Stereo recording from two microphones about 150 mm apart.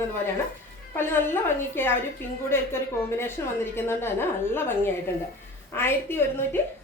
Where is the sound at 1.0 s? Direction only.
15° left (ahead or behind).